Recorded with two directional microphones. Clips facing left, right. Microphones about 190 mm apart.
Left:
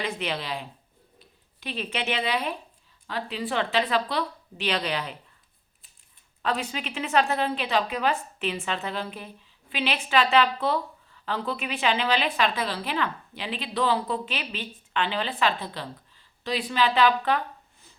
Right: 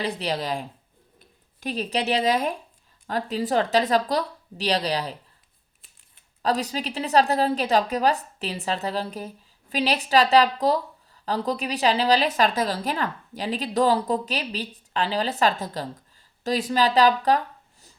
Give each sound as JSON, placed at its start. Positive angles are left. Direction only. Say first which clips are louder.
{"t": 0.0, "sound": "a woman's voice", "louder": "right 3 dB", "side_deg": -35}
{"t": 6.4, "sound": "a woman's voice", "louder": "right 4 dB", "side_deg": -40}